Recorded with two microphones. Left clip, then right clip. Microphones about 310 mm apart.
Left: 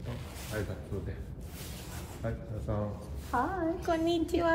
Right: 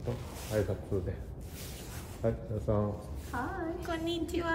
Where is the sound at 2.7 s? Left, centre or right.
Right.